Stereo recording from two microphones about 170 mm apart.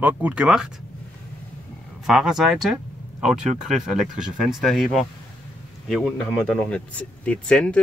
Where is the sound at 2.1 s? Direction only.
5° right (ahead or behind).